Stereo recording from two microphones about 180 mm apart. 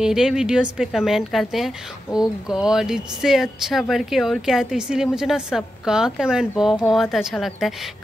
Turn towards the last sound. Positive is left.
turn(degrees=0)  # may be behind; listen again after turning